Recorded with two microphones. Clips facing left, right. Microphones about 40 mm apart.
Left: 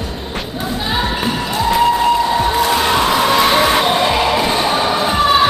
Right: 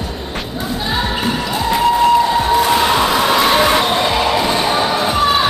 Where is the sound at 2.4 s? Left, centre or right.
Centre.